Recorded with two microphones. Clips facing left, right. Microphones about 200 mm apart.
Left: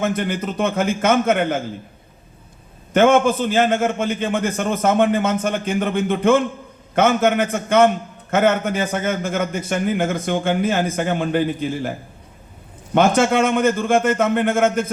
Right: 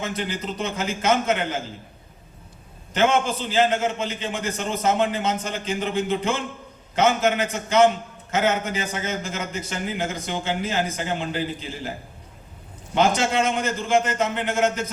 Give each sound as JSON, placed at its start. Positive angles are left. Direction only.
{"t": 0.0, "sound": "a man's voice", "side_deg": 55}
{"t": 2.9, "sound": "a man's voice", "side_deg": 55}